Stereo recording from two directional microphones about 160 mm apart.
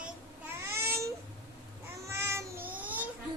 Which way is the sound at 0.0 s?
15° right (ahead or behind).